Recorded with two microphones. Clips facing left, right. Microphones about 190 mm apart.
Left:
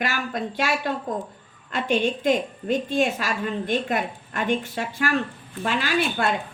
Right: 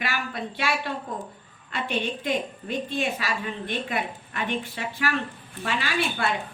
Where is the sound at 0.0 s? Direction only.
45° left (ahead or behind).